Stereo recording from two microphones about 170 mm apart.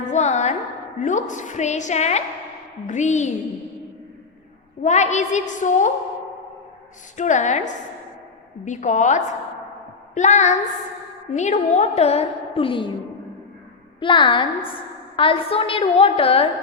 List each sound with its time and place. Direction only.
0.0 s music: 45° left (ahead or behind)
0.9 s a woman's voice: 45° left (ahead or behind)
4.8 s a woman's voice: 45° left (ahead or behind)
7.2 s a woman's voice: 45° left (ahead or behind); by 12.9 s 30° left (ahead or behind)
14.0 s a woman's voice: 30° left (ahead or behind)